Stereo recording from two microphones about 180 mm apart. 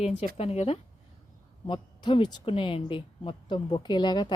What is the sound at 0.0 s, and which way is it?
A woman's voice, 35° left (ahead or behind).